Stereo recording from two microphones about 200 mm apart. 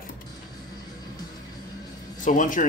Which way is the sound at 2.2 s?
40° left (ahead or behind).